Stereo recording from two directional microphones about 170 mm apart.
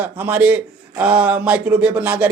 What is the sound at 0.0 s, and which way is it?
Speech, 10° right (ahead or behind).